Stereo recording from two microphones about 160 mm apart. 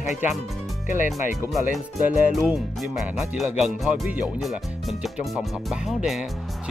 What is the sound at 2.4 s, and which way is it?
Speech, 5° right (ahead or behind).